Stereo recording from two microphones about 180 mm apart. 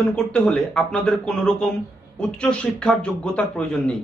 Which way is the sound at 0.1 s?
5° left (ahead or behind).